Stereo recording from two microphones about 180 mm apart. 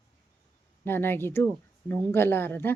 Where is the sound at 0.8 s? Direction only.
10° left (ahead or behind).